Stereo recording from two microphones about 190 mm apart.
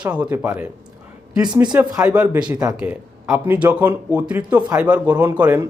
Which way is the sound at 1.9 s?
5° right (ahead or behind).